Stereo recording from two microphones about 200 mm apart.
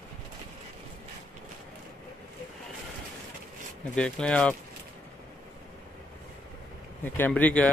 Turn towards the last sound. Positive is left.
turn(degrees=5)  # may be behind; listen again after turning